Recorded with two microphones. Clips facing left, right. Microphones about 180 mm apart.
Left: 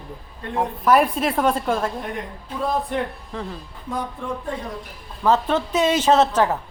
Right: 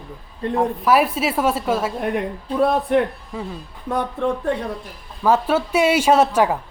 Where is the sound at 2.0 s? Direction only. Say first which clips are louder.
Right 7 dB; 65° right (ahead or behind).